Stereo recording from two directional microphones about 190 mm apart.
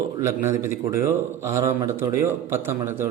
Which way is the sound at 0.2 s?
15° right (ahead or behind).